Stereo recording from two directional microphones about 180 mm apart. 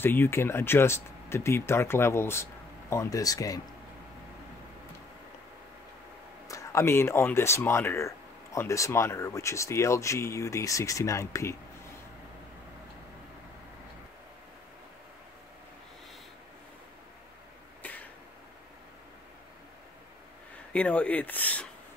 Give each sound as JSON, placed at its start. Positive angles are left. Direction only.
{"t": 0.0, "sound": "speech", "side_deg": 10}
{"t": 6.4, "sound": "speech", "side_deg": 15}
{"t": 20.7, "sound": "speech", "side_deg": 5}